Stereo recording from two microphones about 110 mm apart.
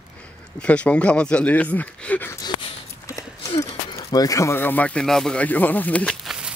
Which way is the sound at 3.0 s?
30° left (ahead or behind).